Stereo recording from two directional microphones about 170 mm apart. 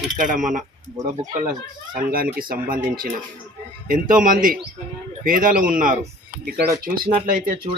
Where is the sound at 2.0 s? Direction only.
55° right (ahead or behind).